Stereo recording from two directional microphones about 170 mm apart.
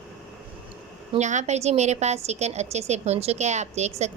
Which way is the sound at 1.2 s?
45° right (ahead or behind).